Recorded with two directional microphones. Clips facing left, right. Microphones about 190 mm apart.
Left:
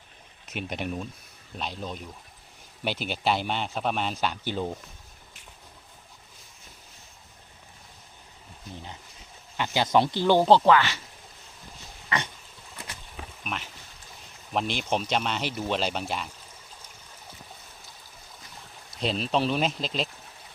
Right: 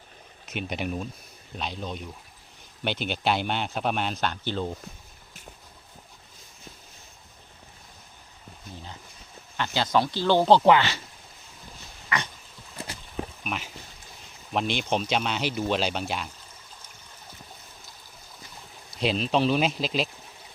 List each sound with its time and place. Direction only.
0.5 s a man's voice: centre (ahead or behind)
9.6 s speech: 15° left (ahead or behind)
10.7 s speech: 25° right (ahead or behind)
12.0 s a sound: 25° left (ahead or behind)
12.7 s boat: 30° right (ahead or behind)
13.4 s a man's voice: 5° right (ahead or behind)
18.9 s a man's voice: centre (ahead or behind)